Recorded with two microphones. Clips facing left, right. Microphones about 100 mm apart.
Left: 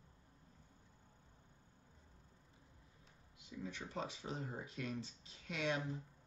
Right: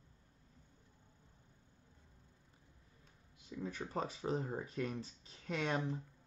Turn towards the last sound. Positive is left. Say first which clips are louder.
# right 3 dB
turn(degrees=-40)  # may be behind; listen again after turning